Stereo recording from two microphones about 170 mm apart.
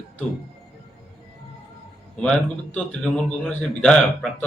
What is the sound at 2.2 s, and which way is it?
A man's voice, 5° left (ahead or behind).